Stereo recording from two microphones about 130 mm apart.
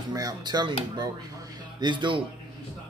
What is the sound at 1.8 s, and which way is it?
Speech, 35° right (ahead or behind).